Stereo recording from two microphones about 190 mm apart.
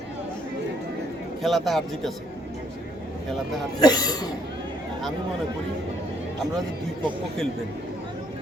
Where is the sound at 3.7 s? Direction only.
20° left (ahead or behind).